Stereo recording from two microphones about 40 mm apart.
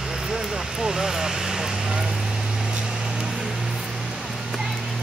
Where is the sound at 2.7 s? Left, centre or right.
Centre.